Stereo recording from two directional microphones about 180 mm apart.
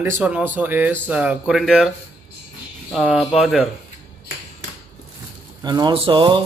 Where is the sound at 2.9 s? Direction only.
5° right (ahead or behind).